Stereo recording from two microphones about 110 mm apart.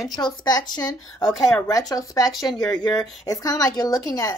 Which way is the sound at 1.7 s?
30° left (ahead or behind).